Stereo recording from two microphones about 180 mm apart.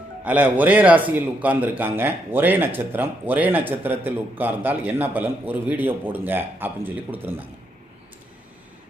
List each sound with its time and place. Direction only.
0.3 s speech: 10° right (ahead or behind)